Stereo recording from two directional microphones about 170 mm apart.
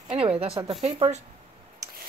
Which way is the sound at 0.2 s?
35° right (ahead or behind).